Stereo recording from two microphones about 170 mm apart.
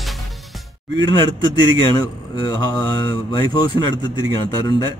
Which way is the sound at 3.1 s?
30° left (ahead or behind).